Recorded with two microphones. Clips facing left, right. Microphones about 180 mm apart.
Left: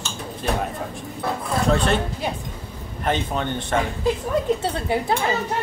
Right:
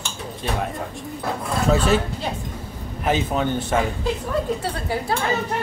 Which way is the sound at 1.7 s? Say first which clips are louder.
Right 4 dB; 5° right (ahead or behind).